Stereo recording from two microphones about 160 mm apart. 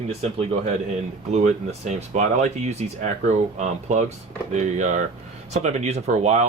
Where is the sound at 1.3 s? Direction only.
45° right (ahead or behind).